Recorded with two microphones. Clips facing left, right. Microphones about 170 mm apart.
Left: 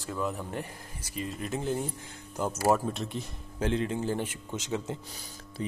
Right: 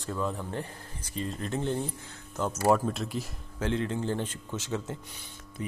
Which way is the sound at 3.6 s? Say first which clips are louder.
Left 1 dB; 15° left (ahead or behind).